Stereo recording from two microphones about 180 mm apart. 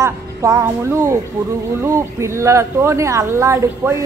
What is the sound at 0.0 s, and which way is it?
A woman's voice, 15° right (ahead or behind).